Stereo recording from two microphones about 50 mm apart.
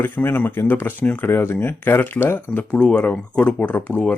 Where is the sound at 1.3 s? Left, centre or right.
Left.